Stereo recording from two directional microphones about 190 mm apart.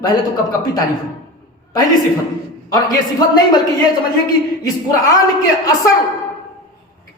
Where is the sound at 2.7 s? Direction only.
20° left (ahead or behind).